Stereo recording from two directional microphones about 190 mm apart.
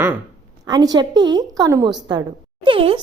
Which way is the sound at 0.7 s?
20° right (ahead or behind).